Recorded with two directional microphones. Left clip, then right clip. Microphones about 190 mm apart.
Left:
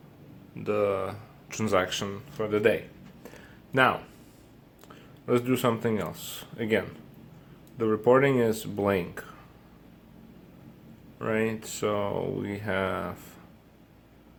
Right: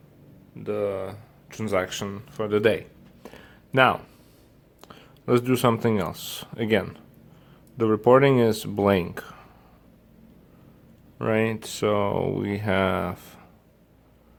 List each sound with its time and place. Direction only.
0.6 s speech: 15° right (ahead or behind); by 2.2 s 30° right (ahead or behind)
2.4 s speech: 50° right (ahead or behind)
3.2 s a sound: 40° right (ahead or behind)
4.9 s speech: 45° right (ahead or behind)
11.2 s speech: 45° right (ahead or behind)